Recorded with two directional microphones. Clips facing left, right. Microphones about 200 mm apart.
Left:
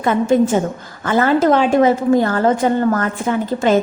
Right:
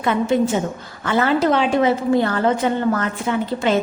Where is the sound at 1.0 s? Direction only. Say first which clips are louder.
Left 3 dB; 45° left (ahead or behind).